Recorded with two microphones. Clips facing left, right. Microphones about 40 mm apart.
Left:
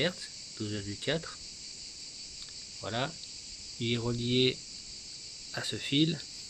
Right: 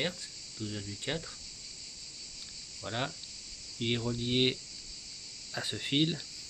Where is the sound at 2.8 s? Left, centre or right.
Centre.